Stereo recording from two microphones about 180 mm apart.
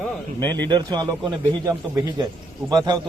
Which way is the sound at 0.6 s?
25° right (ahead or behind).